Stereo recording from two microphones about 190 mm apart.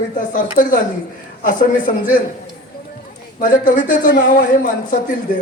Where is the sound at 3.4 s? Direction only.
45° left (ahead or behind).